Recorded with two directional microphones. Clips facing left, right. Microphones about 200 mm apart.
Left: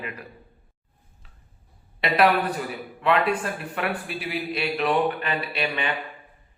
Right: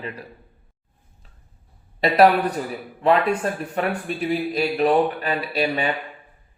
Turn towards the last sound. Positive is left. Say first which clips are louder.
# right 5 dB
turn(degrees=-40)  # may be behind; listen again after turning